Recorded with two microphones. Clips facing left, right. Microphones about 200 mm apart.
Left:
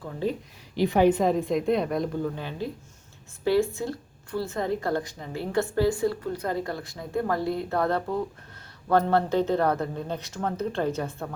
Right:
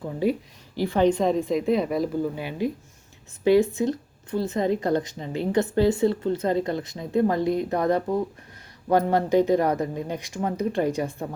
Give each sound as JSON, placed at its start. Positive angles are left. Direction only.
{"t": 0.0, "sound": "speech", "side_deg": -10}
{"t": 0.8, "sound": "a woman's voice", "side_deg": 15}